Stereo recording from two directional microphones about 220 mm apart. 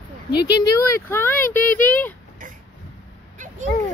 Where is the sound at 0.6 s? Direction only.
10° left (ahead or behind).